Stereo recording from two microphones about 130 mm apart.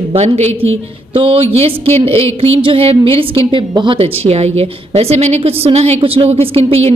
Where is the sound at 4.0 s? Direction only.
50° right (ahead or behind).